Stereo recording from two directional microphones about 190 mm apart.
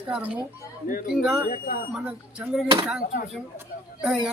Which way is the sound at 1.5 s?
55° left (ahead or behind).